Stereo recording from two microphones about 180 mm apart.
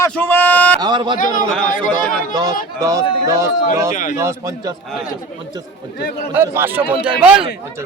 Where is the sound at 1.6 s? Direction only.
50° left (ahead or behind).